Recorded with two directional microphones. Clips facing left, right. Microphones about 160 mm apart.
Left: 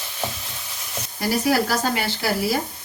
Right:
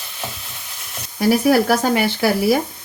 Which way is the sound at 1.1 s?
55° right (ahead or behind).